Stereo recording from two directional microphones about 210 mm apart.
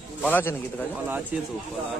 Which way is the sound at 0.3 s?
10° left (ahead or behind).